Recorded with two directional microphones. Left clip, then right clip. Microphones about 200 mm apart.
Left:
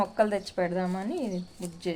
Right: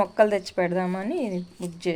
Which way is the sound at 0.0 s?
20° right (ahead or behind).